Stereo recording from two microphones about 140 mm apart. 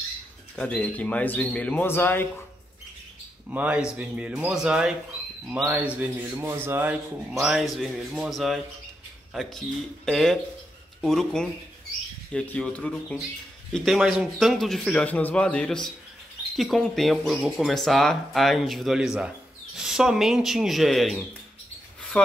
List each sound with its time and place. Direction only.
0.6 s speech: 10° left (ahead or behind)
3.4 s speech: 10° right (ahead or behind)
7.4 s speech: centre (ahead or behind)